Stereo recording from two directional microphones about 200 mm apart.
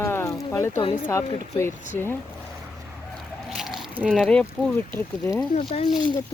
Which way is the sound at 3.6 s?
Centre (ahead or behind).